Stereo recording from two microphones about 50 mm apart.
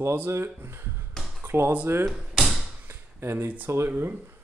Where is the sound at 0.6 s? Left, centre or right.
Right.